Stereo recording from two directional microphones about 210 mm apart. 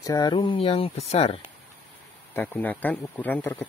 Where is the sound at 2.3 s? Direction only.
5° left (ahead or behind).